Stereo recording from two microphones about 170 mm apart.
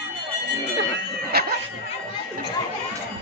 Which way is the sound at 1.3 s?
65° right (ahead or behind).